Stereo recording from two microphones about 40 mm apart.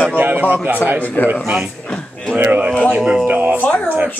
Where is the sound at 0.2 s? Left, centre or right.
Right.